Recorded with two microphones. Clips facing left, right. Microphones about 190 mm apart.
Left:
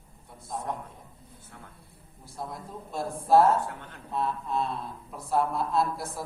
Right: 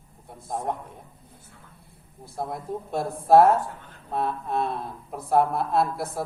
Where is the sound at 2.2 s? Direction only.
60° right (ahead or behind).